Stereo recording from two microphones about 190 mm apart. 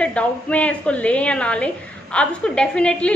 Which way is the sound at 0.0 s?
5° left (ahead or behind).